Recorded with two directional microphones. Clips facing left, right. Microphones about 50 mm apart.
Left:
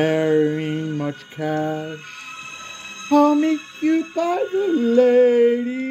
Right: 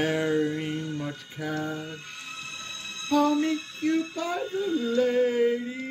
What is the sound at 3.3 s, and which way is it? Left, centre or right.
Music, left.